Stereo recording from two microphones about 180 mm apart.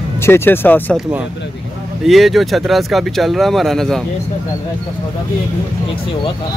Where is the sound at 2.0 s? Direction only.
Centre (ahead or behind).